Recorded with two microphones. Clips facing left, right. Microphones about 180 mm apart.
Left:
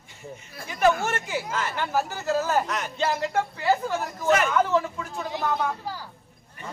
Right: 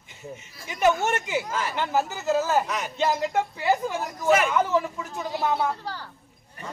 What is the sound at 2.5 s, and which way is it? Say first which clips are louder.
Speech: right 1 dB; 5° right (ahead or behind).